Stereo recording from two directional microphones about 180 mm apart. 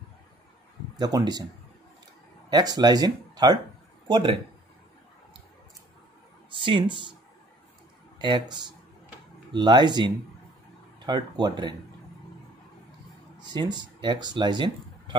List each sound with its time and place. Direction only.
0.9 s speech: 20° right (ahead or behind)
2.5 s speech: 20° right (ahead or behind)
6.5 s speech: 25° right (ahead or behind)
8.2 s speech: 25° right (ahead or behind)
13.5 s speech: 25° right (ahead or behind)